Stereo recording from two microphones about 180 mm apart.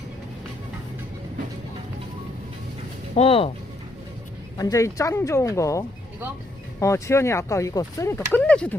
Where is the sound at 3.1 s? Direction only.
35° left (ahead or behind).